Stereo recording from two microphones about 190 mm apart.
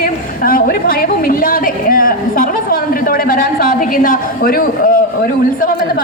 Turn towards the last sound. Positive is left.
turn(degrees=45)  # may be behind; listen again after turning